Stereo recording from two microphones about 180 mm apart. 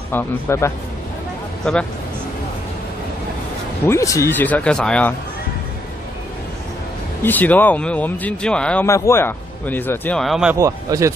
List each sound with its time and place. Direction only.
0.1 s speech: 15° left (ahead or behind)
3.8 s speech: 15° left (ahead or behind)
7.2 s speech: 10° left (ahead or behind)
8.8 s speech: 15° left (ahead or behind); by 10.5 s centre (ahead or behind)
10.5 s speech: 15° right (ahead or behind)